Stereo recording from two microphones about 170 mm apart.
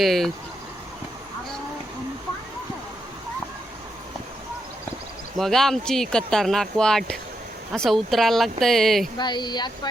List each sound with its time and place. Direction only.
0.0 s speech: centre (ahead or behind)
5.4 s speech: centre (ahead or behind)
9.1 s speech: 25° left (ahead or behind)